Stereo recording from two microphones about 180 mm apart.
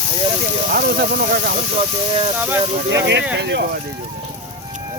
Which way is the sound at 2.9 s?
75° right (ahead or behind).